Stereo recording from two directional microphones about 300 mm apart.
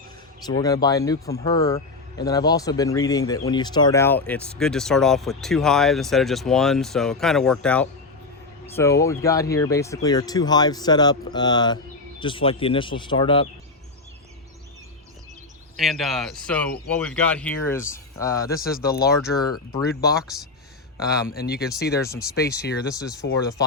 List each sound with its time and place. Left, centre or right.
0.4 s speech: centre
15.8 s speech: centre
18.7 s speech: left